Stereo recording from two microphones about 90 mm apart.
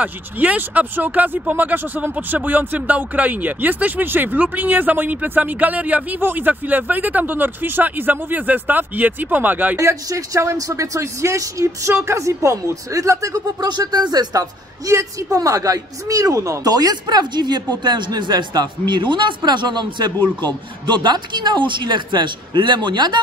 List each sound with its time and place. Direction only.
0.0 s speech: 20° right (ahead or behind)
9.8 s speech: 35° right (ahead or behind)
13.6 s speech: 50° right (ahead or behind)